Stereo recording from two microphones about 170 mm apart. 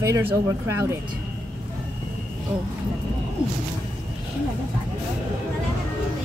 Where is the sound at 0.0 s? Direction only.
15° right (ahead or behind).